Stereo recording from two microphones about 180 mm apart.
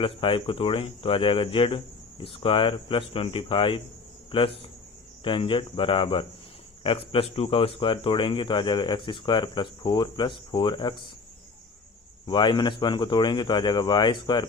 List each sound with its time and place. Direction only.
0.0 s speech: 30° left (ahead or behind)
12.2 s speech: 25° left (ahead or behind)